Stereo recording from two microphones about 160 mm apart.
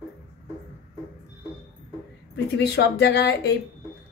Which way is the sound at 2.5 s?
90° left.